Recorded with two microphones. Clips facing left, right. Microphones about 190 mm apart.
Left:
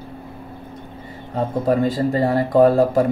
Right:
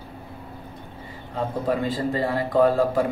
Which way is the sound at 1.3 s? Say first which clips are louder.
Left 6 dB; 40° left (ahead or behind).